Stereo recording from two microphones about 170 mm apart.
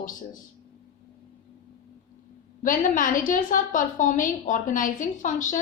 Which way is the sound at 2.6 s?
50° left (ahead or behind).